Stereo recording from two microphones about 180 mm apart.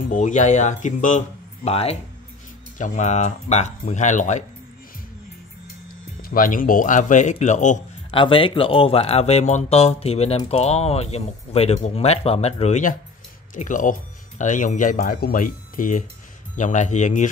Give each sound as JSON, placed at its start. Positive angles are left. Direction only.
{"t": 0.1, "sound": "speech", "side_deg": 45}
{"t": 6.2, "sound": "speech", "side_deg": 50}
{"t": 8.1, "sound": "speech", "side_deg": 30}